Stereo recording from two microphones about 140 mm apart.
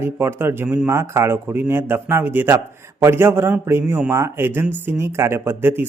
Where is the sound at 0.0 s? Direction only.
15° right (ahead or behind).